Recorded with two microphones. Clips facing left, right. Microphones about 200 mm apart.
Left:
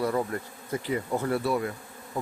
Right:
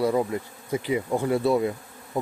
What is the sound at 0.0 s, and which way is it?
Bee, 15° right (ahead or behind).